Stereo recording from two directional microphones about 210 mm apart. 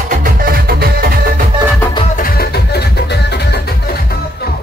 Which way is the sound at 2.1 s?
45° left (ahead or behind).